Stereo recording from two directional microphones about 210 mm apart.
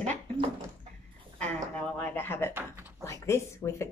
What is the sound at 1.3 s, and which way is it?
Speech, 5° left (ahead or behind).